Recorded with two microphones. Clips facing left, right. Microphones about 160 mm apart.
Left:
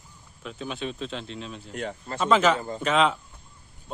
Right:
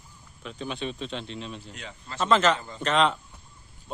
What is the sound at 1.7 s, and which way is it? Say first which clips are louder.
Speech: left 9 dB; 50° left (ahead or behind).